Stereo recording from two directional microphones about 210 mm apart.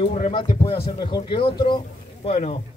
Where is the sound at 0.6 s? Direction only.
20° left (ahead or behind).